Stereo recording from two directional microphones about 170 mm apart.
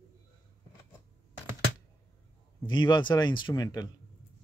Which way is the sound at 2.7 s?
25° left (ahead or behind).